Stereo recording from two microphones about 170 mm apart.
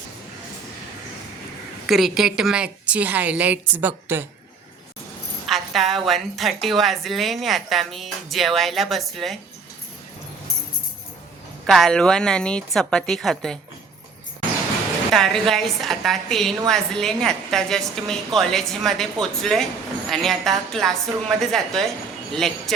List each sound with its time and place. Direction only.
1.9 s a woman's voice: centre (ahead or behind)
5.5 s a woman's voice: centre (ahead or behind)
11.6 s a woman's voice: centre (ahead or behind)
15.1 s a woman's voice: centre (ahead or behind)